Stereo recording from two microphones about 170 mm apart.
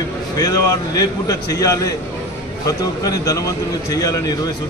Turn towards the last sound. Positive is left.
turn(degrees=20)  # may be behind; listen again after turning